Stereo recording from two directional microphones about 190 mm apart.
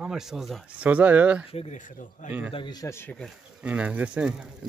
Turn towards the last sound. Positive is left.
turn(degrees=-5)  # may be behind; listen again after turning